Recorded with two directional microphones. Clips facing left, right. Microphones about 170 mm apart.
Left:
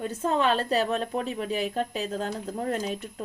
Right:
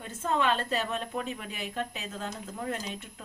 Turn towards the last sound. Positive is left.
turn(degrees=40)  # may be behind; listen again after turning